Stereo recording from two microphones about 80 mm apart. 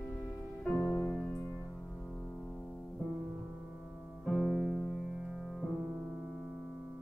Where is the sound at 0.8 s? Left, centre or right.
Centre.